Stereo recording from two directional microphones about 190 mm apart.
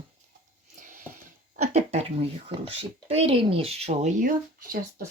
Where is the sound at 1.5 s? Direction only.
35° right (ahead or behind).